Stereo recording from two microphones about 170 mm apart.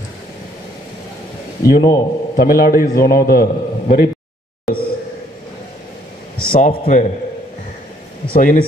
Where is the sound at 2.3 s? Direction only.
60° left (ahead or behind).